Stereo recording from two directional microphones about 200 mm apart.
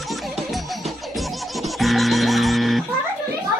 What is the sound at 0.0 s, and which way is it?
Music, centre (ahead or behind).